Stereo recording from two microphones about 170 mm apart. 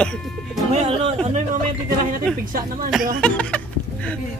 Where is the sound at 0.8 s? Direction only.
45° right (ahead or behind).